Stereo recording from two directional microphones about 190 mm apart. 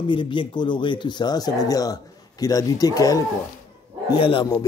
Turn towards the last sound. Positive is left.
turn(degrees=20)  # may be behind; listen again after turning